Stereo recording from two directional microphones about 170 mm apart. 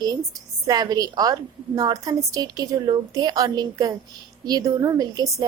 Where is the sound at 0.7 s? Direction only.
20° right (ahead or behind).